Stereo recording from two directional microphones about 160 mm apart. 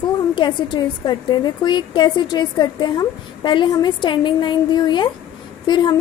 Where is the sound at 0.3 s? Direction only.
30° left (ahead or behind).